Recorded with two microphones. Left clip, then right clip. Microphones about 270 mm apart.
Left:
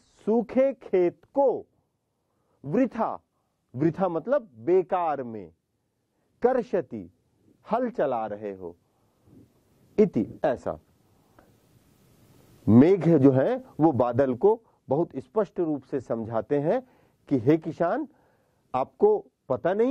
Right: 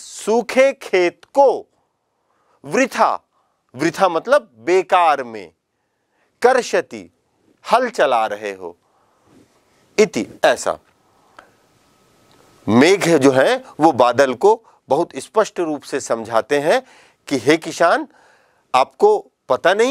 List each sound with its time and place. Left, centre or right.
0.0 s speech: centre
2.6 s speech: centre
9.9 s speech: centre
12.6 s speech: centre
14.5 s speech: centre
14.9 s speech: centre